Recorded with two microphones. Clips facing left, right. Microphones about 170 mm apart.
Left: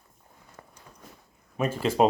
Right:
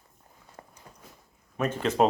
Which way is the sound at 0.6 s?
35° right (ahead or behind).